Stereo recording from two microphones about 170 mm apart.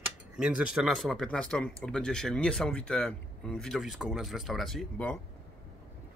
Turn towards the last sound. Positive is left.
turn(degrees=10)  # may be behind; listen again after turning